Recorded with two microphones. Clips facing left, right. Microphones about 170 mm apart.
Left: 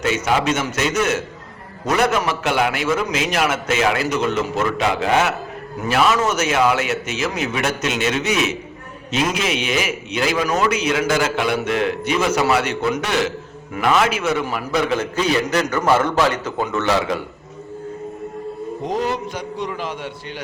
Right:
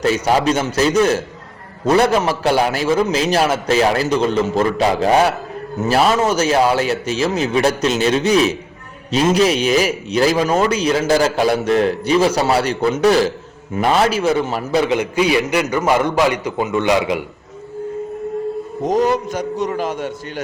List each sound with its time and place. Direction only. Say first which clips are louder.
0.0 s a man's voice: right 4 dB; 35° right (ahead or behind)
14.8 s a man's voice: right 3 dB; 15° right (ahead or behind)
18.9 s a man's voice: right 7 dB; 45° right (ahead or behind)